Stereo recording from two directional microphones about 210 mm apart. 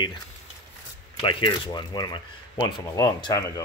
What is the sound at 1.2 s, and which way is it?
Speech, 25° left (ahead or behind).